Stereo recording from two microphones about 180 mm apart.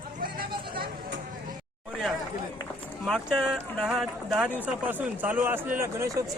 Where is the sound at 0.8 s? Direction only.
70° right (ahead or behind).